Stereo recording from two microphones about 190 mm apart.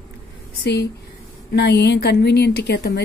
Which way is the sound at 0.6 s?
55° left (ahead or behind).